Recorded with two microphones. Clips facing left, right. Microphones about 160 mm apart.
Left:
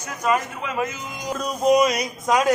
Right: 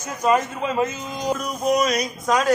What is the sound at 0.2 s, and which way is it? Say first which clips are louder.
Speech: right 3 dB; 25° right (ahead or behind).